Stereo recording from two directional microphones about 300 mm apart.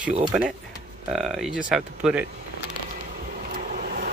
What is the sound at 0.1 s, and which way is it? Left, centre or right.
Speech, centre.